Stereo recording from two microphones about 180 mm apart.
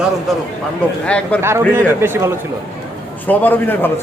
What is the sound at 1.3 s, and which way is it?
Speech, 10° left (ahead or behind).